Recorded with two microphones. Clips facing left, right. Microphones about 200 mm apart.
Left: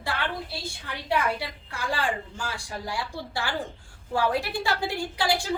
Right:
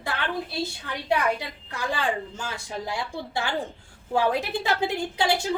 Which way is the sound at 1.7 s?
20° right (ahead or behind).